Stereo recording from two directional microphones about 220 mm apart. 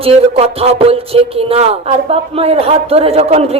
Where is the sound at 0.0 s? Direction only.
25° right (ahead or behind).